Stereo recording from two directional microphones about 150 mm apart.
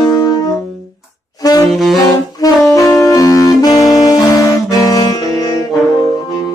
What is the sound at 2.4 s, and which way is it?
Saxophone, 25° left (ahead or behind).